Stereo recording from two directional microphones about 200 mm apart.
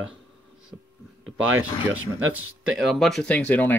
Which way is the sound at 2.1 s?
85° right.